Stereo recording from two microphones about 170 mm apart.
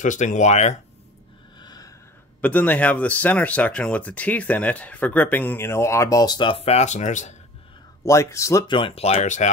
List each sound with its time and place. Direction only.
0.0 s speech: 45° left (ahead or behind)
1.6 s a sound: 25° left (ahead or behind)
2.4 s speech: 10° left (ahead or behind); by 7.3 s 45° left (ahead or behind)
8.0 s speech: 15° left (ahead or behind)
8.7 s speech: 35° left (ahead or behind)